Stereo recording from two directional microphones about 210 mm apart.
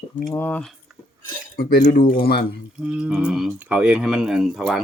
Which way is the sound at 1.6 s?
45° left (ahead or behind).